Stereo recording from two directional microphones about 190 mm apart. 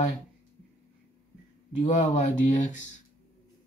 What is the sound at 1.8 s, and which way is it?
Speech, 40° left (ahead or behind).